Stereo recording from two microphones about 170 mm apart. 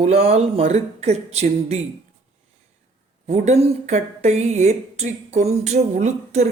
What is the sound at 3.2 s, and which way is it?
A woman's voice, 40° right (ahead or behind).